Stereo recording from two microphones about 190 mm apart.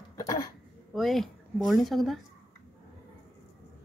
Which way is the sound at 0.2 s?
20° left (ahead or behind).